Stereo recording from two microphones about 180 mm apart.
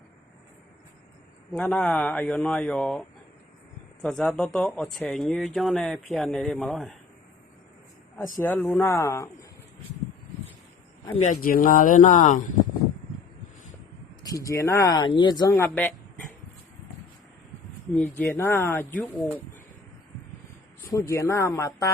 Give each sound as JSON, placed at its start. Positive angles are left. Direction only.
{"t": 1.5, "sound": "speech", "side_deg": 5}
{"t": 8.4, "sound": "speech", "side_deg": 10}
{"t": 11.2, "sound": "speech", "side_deg": 45}
{"t": 14.3, "sound": "speech", "side_deg": 20}
{"t": 15.6, "sound": "speech", "side_deg": 10}
{"t": 17.9, "sound": "speech", "side_deg": 10}
{"t": 21.1, "sound": "speech", "side_deg": 15}